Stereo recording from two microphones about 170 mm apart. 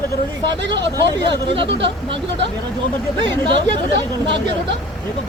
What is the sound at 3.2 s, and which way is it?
Speech, 30° right (ahead or behind).